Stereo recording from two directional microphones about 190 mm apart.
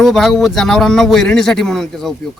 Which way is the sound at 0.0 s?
Centre (ahead or behind).